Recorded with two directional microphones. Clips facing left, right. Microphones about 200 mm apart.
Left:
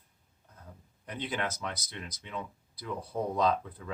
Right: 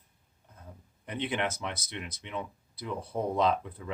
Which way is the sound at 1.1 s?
20° right (ahead or behind).